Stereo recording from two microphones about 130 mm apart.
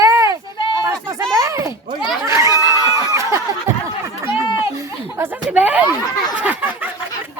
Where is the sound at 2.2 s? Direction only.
20° right (ahead or behind).